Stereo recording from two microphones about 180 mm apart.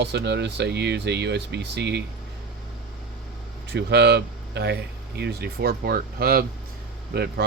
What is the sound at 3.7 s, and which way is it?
Speech, 65° right (ahead or behind).